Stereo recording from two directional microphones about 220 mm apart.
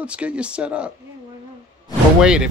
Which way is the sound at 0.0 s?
5° right (ahead or behind).